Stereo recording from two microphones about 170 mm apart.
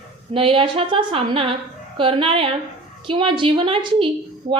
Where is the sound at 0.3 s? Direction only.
30° right (ahead or behind).